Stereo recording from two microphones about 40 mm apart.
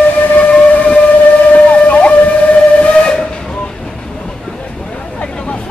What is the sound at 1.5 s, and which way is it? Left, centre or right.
Steam whistle, left.